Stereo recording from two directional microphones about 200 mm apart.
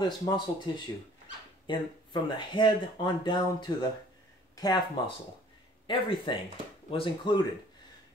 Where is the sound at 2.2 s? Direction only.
25° left (ahead or behind).